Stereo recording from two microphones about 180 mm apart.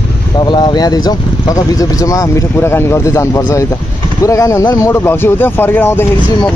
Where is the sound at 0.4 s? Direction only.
25° left (ahead or behind).